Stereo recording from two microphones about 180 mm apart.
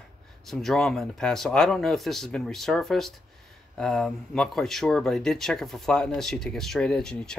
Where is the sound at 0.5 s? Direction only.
Centre (ahead or behind).